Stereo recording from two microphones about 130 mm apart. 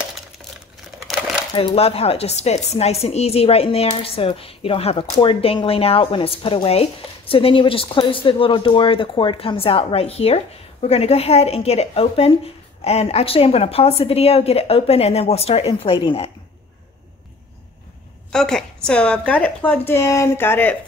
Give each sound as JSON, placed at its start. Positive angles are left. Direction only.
{"t": 1.0, "sound": "a sound", "side_deg": 0}
{"t": 1.5, "sound": "speech", "side_deg": 40}
{"t": 18.3, "sound": "speech", "side_deg": 5}